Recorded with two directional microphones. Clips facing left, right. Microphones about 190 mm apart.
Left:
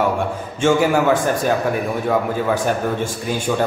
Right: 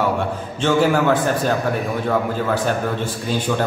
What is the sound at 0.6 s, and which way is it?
Speech, 10° left (ahead or behind).